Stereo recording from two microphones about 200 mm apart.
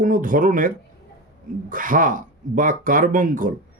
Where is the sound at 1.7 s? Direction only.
40° right (ahead or behind).